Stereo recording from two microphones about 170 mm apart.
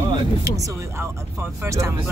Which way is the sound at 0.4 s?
20° right (ahead or behind).